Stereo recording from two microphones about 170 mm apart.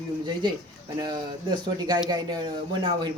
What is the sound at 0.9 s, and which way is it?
Speech, 25° right (ahead or behind).